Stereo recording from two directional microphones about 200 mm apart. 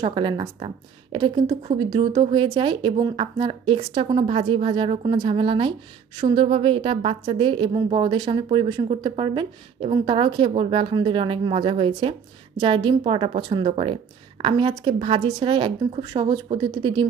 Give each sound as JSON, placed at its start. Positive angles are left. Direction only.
{"t": 0.0, "sound": "a woman's voice", "side_deg": -25}